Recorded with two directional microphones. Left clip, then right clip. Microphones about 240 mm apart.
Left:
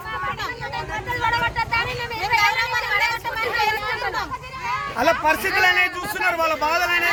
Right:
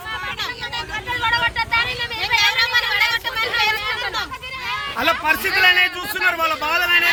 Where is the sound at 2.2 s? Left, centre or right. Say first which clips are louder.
Right 2 dB; centre.